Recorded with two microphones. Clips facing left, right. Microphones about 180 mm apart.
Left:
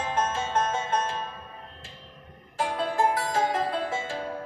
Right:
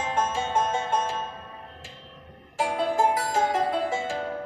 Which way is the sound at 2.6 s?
10° right (ahead or behind).